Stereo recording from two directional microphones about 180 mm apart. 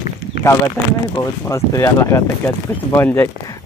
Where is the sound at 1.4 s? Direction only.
15° left (ahead or behind).